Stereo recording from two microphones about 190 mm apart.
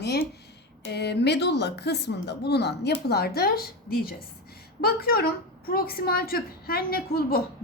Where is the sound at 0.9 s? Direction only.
60° left (ahead or behind).